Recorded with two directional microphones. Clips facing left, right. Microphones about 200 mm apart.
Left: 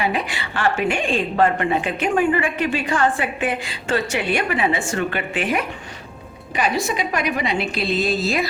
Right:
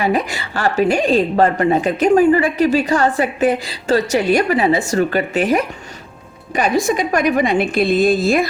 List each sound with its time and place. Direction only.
0.0 s a woman's voice: 45° right (ahead or behind)